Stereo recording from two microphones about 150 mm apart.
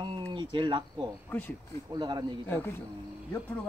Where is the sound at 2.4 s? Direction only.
15° left (ahead or behind).